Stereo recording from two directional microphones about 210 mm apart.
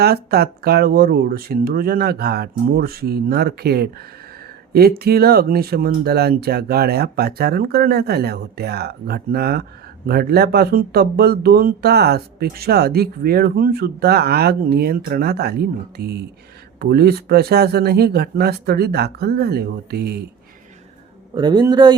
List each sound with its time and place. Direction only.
0.0 s speech: 50° right (ahead or behind)
21.3 s speech: 20° right (ahead or behind)